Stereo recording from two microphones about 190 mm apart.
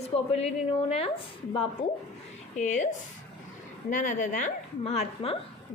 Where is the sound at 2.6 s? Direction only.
40° left (ahead or behind).